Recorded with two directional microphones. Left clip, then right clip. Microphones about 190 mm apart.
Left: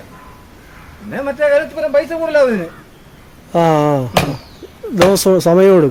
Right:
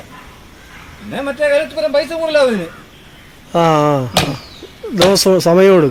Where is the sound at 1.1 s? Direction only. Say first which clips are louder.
Left 1 dB; 5° left (ahead or behind).